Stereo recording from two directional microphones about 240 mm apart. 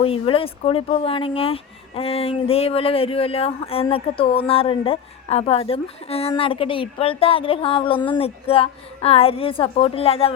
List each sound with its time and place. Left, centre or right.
0.0 s speech: left